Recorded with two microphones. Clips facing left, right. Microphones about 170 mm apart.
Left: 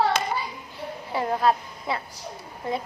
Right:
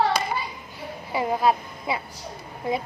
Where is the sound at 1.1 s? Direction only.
5° right (ahead or behind).